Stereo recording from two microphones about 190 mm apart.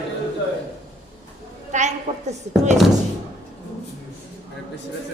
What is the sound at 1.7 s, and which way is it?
Speech, 40° right (ahead or behind).